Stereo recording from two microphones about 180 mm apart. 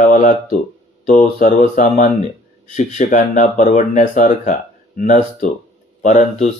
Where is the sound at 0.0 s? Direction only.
45° left (ahead or behind).